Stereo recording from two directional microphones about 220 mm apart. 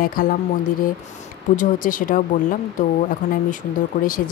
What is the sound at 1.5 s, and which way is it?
Speech, 40° left (ahead or behind).